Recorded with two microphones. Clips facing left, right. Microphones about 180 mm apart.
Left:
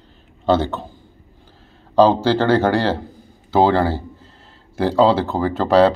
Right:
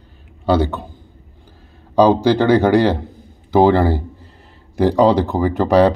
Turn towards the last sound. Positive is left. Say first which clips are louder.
# right 1 dB
turn(degrees=-15)  # may be behind; listen again after turning